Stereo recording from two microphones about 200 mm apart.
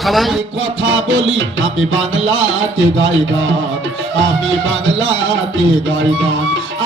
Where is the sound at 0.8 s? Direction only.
70° right (ahead or behind).